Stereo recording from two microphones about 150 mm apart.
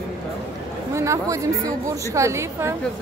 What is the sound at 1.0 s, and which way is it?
A woman's voice, 20° right (ahead or behind).